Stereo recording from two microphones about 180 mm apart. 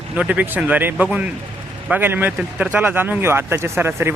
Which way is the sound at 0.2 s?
10° right (ahead or behind).